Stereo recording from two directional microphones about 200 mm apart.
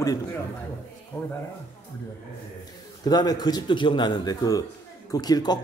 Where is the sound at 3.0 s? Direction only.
20° left (ahead or behind).